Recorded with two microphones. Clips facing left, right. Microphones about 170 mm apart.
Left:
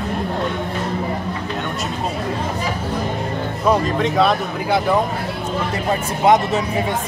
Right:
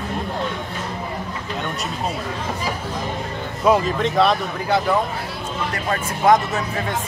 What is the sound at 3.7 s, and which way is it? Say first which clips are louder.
Speech: even; centre (ahead or behind).